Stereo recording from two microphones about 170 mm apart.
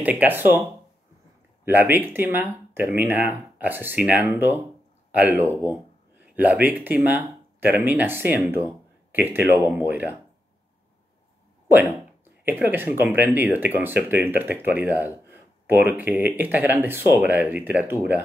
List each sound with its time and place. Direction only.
0.0 s speech: 10° right (ahead or behind)
12.4 s speech: 10° right (ahead or behind)